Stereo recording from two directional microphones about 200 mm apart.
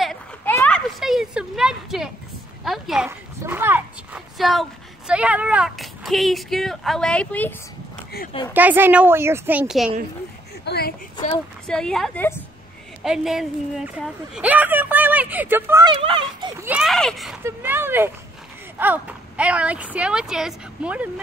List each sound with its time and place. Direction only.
0.0 s a sound: centre (ahead or behind)
2.6 s speech: centre (ahead or behind)
8.5 s a woman's voice: 10° right (ahead or behind)
10.6 s speech: 55° left (ahead or behind)
11.6 s speech: 5° left (ahead or behind)
13.0 s a woman's voice: centre (ahead or behind)
15.9 s speech: 25° right (ahead or behind)
16.6 s speech: 5° right (ahead or behind)
17.5 s a woman's voice: 10° right (ahead or behind)